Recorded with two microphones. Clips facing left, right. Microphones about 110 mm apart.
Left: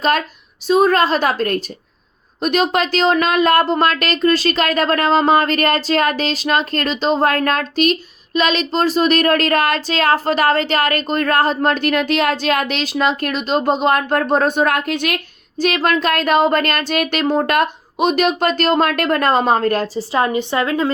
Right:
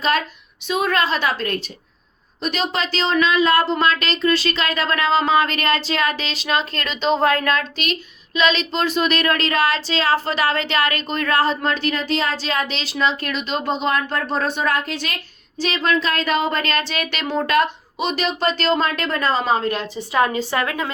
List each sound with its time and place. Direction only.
0.7 s speech: 40° left (ahead or behind)
20.0 s a woman's voice: 25° left (ahead or behind)